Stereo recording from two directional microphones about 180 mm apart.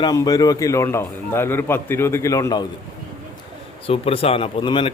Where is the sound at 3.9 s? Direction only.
30° left (ahead or behind).